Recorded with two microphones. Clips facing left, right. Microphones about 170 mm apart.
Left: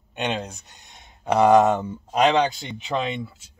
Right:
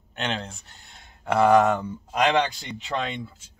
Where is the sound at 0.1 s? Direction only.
15° left (ahead or behind).